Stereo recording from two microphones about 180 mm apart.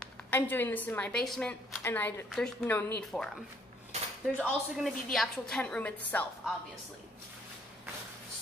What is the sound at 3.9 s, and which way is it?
Cutlery, 35° right (ahead or behind).